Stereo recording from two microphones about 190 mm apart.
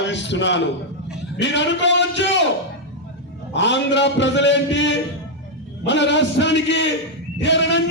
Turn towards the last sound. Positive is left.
turn(degrees=70)  # may be behind; listen again after turning